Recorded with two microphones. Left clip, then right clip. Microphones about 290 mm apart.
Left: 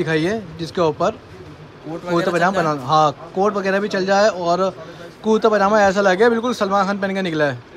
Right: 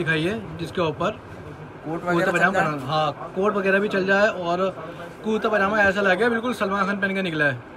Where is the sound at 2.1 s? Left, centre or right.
Centre.